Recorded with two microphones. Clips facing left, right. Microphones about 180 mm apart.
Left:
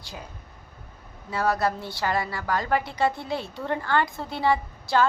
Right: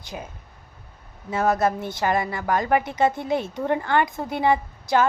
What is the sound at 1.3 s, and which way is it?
A woman's voice, 20° right (ahead or behind).